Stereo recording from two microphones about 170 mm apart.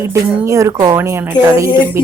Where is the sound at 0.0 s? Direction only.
15° right (ahead or behind).